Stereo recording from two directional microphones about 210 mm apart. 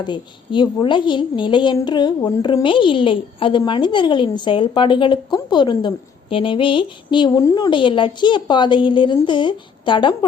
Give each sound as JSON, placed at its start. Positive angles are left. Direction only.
{"t": 0.0, "sound": "a woman's voice", "side_deg": 20}